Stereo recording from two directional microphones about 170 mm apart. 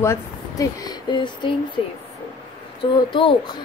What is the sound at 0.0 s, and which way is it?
Speech, 20° left (ahead or behind).